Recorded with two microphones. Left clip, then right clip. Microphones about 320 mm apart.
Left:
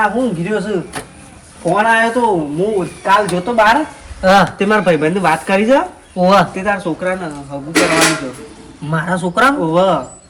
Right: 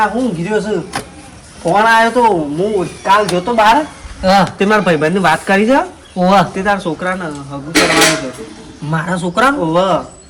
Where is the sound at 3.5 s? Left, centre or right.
Centre.